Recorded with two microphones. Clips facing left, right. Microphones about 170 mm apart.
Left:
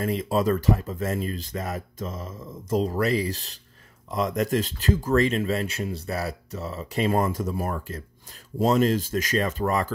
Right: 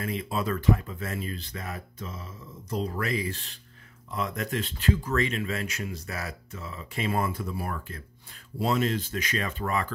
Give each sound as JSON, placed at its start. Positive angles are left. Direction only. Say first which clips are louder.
{"t": 0.0, "sound": "speech", "louder": "left 7 dB", "side_deg": 40}